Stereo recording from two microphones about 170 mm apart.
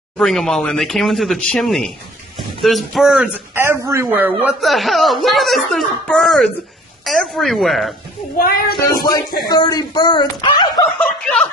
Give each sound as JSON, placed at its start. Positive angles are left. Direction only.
{"t": 0.2, "sound": "speech", "side_deg": 0}
{"t": 8.4, "sound": "speech", "side_deg": 60}
{"t": 8.8, "sound": "speech", "side_deg": 25}
{"t": 10.9, "sound": "speech", "side_deg": 5}